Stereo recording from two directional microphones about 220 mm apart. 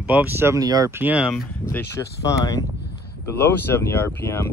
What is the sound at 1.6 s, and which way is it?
Speech, 15° left (ahead or behind).